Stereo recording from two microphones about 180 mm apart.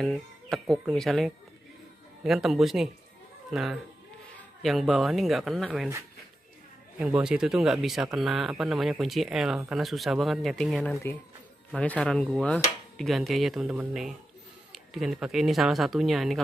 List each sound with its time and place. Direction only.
0.0 s speech: centre (ahead or behind)
7.0 s speech: 5° right (ahead or behind)